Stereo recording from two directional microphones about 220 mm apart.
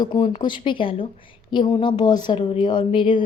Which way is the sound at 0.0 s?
20° left (ahead or behind).